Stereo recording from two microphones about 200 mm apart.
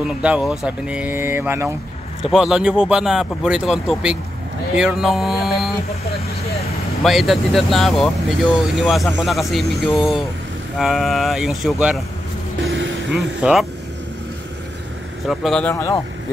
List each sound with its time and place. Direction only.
0.2 s speech: 5° right (ahead or behind)
7.0 s speech: centre (ahead or behind)
12.6 s vehicle: 70° right (ahead or behind)
13.1 s speech: centre (ahead or behind)
15.2 s speech: centre (ahead or behind)
15.7 s speech: 15° left (ahead or behind)